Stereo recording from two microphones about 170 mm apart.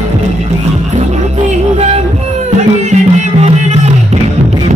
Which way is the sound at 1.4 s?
45° right (ahead or behind).